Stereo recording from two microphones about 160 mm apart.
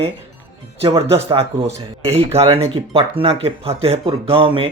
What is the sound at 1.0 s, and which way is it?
Speech, 35° right (ahead or behind).